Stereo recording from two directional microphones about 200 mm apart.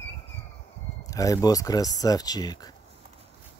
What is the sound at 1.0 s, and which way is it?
Speech, 15° left (ahead or behind).